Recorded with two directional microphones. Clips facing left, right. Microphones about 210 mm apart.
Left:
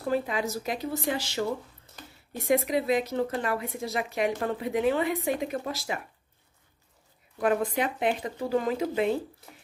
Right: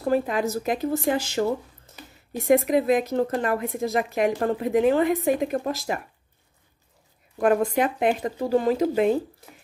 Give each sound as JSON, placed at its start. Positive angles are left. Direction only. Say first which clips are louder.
{"t": 0.1, "sound": "speech", "louder": "right 5 dB", "side_deg": -50}
{"t": 2.4, "sound": "speech", "louder": "right 6 dB", "side_deg": -50}
{"t": 7.3, "sound": "speech", "louder": "right 5 dB", "side_deg": -45}